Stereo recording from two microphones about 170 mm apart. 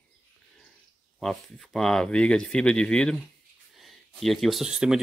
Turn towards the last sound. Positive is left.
turn(degrees=-5)  # may be behind; listen again after turning